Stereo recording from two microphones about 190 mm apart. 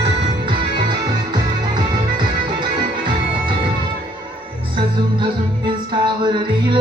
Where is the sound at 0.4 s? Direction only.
25° right (ahead or behind).